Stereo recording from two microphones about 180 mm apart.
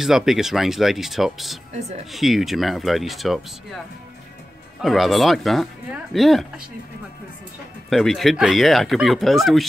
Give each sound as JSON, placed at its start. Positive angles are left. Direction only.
{"t": 0.0, "sound": "speech", "side_deg": 0}
{"t": 1.7, "sound": "speech", "side_deg": -35}
{"t": 2.1, "sound": "speech", "side_deg": 0}
{"t": 4.8, "sound": "speech", "side_deg": 0}
{"t": 7.9, "sound": "speech", "side_deg": 0}